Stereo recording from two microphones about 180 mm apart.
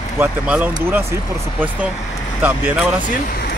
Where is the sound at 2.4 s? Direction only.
10° right (ahead or behind).